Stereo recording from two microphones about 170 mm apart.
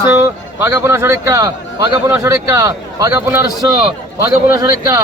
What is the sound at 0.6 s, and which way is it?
A man's voice, 15° right (ahead or behind).